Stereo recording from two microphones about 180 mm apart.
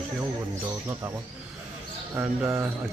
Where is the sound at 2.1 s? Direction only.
10° right (ahead or behind).